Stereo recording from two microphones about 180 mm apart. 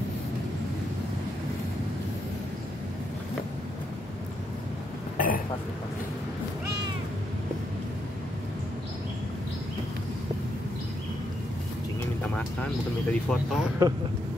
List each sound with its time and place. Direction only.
5.1 s burping: 50° left (ahead or behind)
13.1 s speech: 5° left (ahead or behind)
13.8 s speech: 15° right (ahead or behind)